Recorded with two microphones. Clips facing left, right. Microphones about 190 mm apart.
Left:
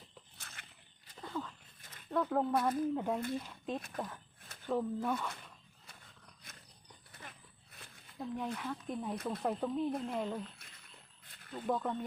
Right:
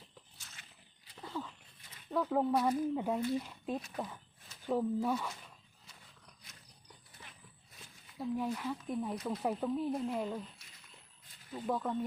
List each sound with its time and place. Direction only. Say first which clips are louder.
0.3 s a sound: left 4 dB; 60° left (ahead or behind)
1.3 s a sound: left 1 dB; 5° right (ahead or behind)
2.0 s speech: right 1 dB; 5° right (ahead or behind)
6.4 s dog: left 5 dB; 50° left (ahead or behind)
8.2 s speech: right 3 dB; 5° right (ahead or behind)
11.5 s speech: even; centre (ahead or behind)